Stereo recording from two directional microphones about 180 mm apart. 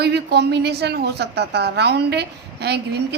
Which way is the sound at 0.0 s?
65° right (ahead or behind).